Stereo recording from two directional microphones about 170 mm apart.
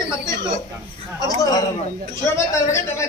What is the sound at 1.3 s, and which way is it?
A man's voice, 20° left (ahead or behind).